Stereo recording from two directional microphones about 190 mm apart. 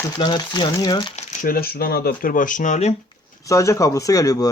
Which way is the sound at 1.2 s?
50° left (ahead or behind).